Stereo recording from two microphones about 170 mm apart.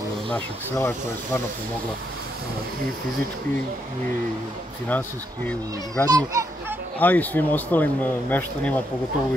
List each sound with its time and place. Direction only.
0.3 s speech: 15° left (ahead or behind)
4.8 s speech: 10° left (ahead or behind)
6.0 s a child's voice: 20° right (ahead or behind)
7.0 s speech: 10° left (ahead or behind)